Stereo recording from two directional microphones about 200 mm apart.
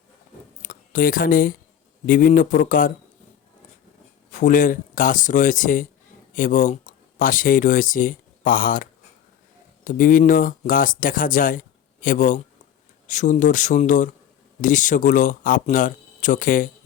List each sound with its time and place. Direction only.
0.6 s speech: 40° left (ahead or behind)
4.4 s speech: 40° left (ahead or behind)